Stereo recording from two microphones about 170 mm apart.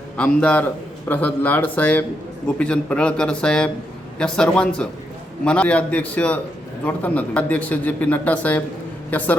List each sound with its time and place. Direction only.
0.2 s a man's voice: 5° left (ahead or behind)